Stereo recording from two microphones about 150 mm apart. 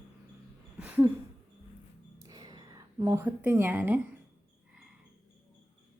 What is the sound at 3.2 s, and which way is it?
Speech, 10° right (ahead or behind).